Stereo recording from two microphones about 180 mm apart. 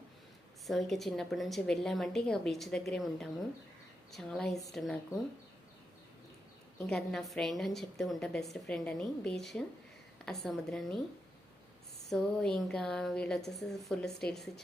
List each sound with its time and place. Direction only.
0.7 s a woman's voice: centre (ahead or behind)
6.7 s a woman's voice: 5° left (ahead or behind)
12.0 s a woman's voice: 5° left (ahead or behind)